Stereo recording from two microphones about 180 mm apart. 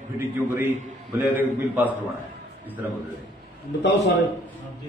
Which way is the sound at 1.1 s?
10° right (ahead or behind).